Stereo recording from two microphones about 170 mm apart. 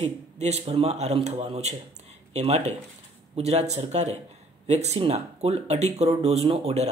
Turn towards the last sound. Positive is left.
turn(degrees=-40)  # may be behind; listen again after turning